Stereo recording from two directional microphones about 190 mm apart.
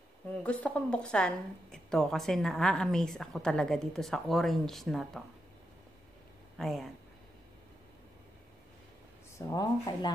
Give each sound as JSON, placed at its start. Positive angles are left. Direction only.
{"t": 0.4, "sound": "a woman's voice", "side_deg": 5}
{"t": 6.6, "sound": "a woman's voice", "side_deg": 0}
{"t": 9.5, "sound": "speech", "side_deg": 20}